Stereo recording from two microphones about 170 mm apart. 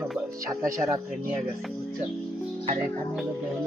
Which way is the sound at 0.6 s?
15° right (ahead or behind).